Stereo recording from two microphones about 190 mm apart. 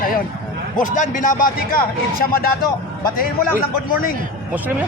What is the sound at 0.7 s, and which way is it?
A man's voice, 40° left (ahead or behind).